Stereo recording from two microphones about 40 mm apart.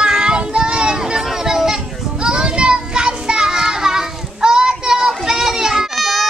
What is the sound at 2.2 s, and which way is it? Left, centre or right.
Child singing, right.